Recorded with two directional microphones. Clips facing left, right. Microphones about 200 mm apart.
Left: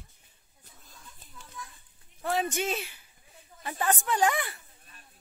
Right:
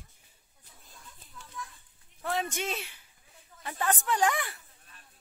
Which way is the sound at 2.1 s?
5° left (ahead or behind).